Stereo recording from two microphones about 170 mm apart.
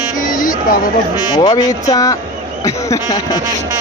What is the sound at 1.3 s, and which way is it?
Speech, 25° left (ahead or behind).